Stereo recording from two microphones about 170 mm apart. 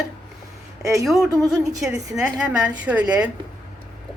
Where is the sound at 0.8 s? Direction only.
20° right (ahead or behind).